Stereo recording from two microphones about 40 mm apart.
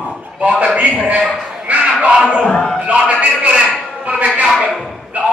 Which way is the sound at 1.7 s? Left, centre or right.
Right.